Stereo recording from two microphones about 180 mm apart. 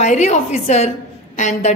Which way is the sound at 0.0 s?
40° left (ahead or behind).